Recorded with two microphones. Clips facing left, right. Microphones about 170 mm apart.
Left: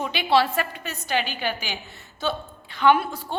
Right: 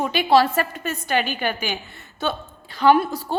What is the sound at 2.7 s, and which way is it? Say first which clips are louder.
Speech: right 3 dB; 40° right (ahead or behind).